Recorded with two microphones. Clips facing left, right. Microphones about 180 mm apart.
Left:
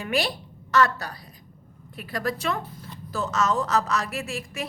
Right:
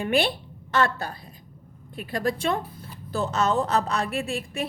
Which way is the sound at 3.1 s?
30° right (ahead or behind).